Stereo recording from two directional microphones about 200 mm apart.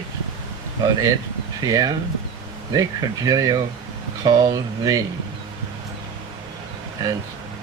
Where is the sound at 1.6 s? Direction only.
20° right (ahead or behind).